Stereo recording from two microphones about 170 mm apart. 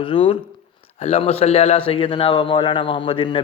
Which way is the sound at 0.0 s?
30° left (ahead or behind).